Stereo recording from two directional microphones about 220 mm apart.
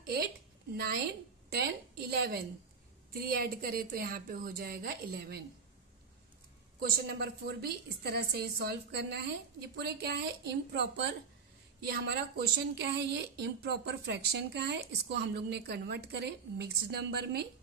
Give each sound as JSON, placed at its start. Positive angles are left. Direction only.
{"t": 0.7, "sound": "speech", "side_deg": -45}
{"t": 6.8, "sound": "speech", "side_deg": -45}